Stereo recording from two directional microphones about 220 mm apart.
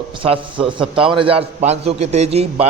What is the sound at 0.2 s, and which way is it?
A man's voice, 25° right (ahead or behind).